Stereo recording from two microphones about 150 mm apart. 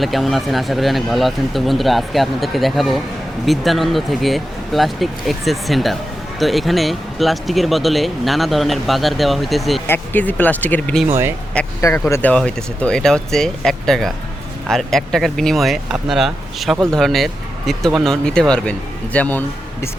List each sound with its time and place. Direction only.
0.0 s speech: centre (ahead or behind)
9.8 s speech: 15° left (ahead or behind)
11.1 s speech: 15° right (ahead or behind)
11.8 s speech: 20° left (ahead or behind)